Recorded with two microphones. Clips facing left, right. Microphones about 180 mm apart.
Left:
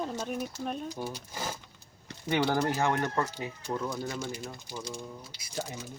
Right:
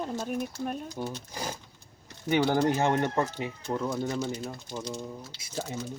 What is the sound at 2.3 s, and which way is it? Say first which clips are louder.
Speech: right 3 dB; 20° right (ahead or behind).